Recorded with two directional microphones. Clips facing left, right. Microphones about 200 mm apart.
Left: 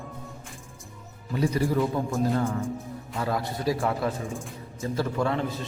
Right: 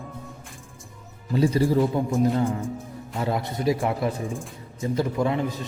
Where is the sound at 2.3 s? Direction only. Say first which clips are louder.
Right 2 dB; 15° right (ahead or behind).